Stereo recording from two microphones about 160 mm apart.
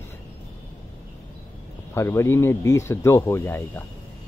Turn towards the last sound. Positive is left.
turn(degrees=15)  # may be behind; listen again after turning